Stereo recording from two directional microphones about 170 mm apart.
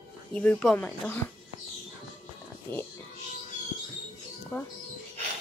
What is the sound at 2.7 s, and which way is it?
Speech, 25° right (ahead or behind).